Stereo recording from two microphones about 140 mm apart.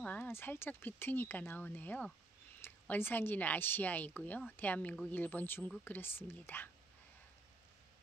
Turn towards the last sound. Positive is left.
turn(degrees=15)  # may be behind; listen again after turning